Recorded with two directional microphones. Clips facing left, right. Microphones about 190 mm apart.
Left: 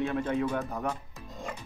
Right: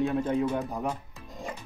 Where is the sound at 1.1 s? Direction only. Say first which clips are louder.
Right 1 dB; 5° right (ahead or behind).